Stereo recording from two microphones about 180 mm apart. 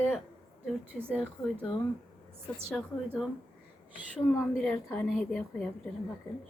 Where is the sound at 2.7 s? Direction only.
Centre (ahead or behind).